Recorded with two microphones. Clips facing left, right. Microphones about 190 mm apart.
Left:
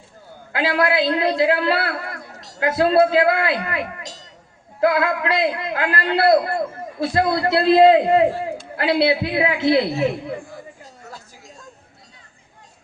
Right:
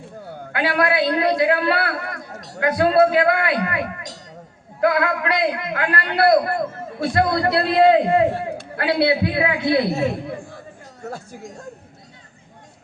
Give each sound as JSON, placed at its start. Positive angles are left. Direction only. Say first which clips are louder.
{"t": 0.5, "sound": "a man's voice", "louder": "left 1 dB", "side_deg": 25}
{"t": 11.1, "sound": "speech", "louder": "right 8 dB", "side_deg": -55}